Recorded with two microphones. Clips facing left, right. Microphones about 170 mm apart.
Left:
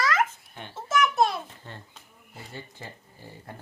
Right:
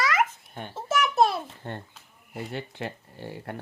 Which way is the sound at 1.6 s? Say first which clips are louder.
Right 7 dB; 55° right (ahead or behind).